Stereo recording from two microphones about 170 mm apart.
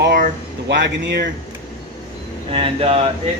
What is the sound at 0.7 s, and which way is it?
Speech, 90° right.